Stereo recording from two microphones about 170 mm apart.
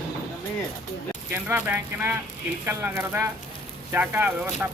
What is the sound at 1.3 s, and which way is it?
Speech, 10° right (ahead or behind).